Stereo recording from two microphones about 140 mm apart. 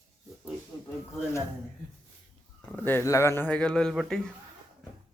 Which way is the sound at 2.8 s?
15° left (ahead or behind).